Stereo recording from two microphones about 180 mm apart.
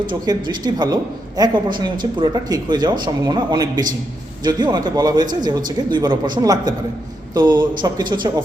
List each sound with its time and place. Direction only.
0.1 s speech: 25° right (ahead or behind)